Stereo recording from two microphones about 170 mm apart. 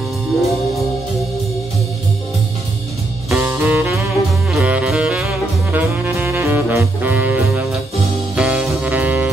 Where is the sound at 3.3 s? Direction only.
15° right (ahead or behind).